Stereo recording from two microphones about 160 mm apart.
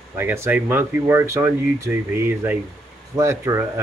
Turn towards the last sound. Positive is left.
turn(degrees=-15)  # may be behind; listen again after turning